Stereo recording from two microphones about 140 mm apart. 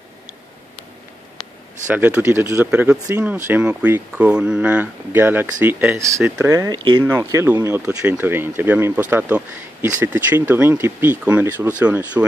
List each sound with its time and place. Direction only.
1.9 s speech: 10° right (ahead or behind)
7.9 s speech: 10° right (ahead or behind)